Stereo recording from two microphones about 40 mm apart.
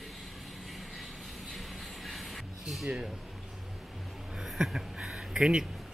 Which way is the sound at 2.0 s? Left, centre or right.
Centre.